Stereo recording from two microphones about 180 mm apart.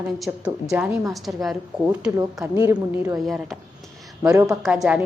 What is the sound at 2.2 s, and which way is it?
Speech, 20° right (ahead or behind).